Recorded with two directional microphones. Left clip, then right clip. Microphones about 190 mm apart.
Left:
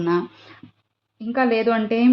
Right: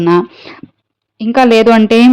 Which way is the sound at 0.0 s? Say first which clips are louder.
Right 11 dB; 40° right (ahead or behind).